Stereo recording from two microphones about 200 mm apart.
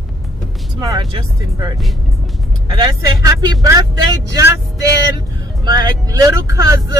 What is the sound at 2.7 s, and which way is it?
Speech, 20° right (ahead or behind).